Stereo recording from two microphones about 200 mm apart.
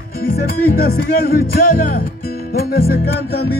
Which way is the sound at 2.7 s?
50° left (ahead or behind).